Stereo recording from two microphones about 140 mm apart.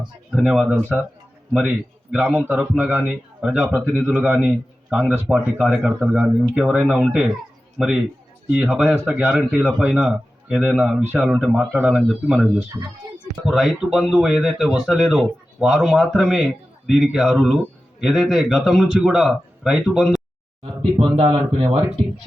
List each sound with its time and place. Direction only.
0.3 s speech: 5° right (ahead or behind)
2.1 s speech: 5° right (ahead or behind)
20.6 s speech: 40° right (ahead or behind)